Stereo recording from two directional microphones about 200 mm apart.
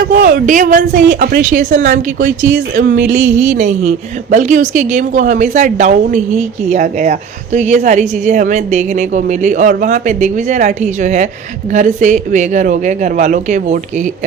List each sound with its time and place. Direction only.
0.0 s a woman's voice: 45° right (ahead or behind)